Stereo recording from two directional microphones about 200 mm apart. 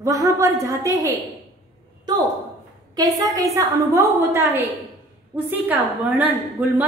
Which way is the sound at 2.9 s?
20° right (ahead or behind).